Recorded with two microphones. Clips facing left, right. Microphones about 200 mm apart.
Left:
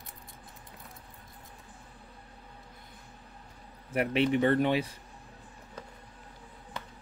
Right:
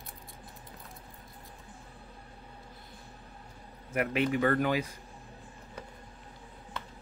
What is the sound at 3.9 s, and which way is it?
Speech, 30° left (ahead or behind).